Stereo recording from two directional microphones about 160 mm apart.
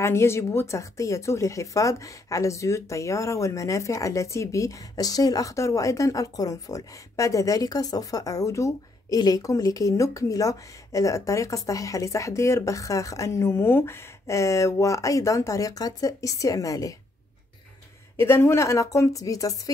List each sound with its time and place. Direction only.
0.0 s speech: 15° left (ahead or behind)
18.1 s speech: 15° left (ahead or behind)